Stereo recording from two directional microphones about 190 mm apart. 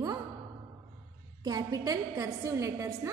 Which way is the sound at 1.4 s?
20° right (ahead or behind).